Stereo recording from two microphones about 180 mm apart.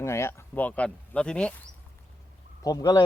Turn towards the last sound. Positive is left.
turn(degrees=20)  # may be behind; listen again after turning